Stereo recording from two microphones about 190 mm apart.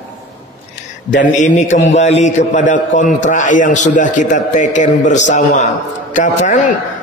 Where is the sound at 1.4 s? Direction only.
40° left (ahead or behind).